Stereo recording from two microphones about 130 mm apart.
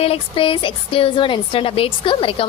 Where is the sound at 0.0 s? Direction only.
45° left (ahead or behind).